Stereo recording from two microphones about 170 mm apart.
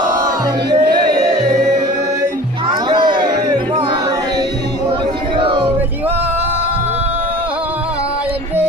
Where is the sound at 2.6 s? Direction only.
30° right (ahead or behind).